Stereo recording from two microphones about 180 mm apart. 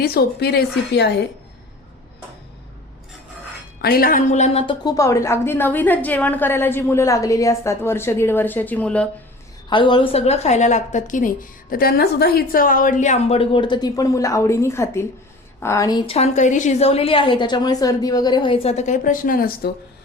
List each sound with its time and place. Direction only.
0.0 s a woman's voice: 60° left (ahead or behind)
3.8 s a woman's voice: 60° left (ahead or behind); by 9.0 s 10° left (ahead or behind)
9.6 s a woman's voice: 25° left (ahead or behind); by 19.7 s 55° left (ahead or behind)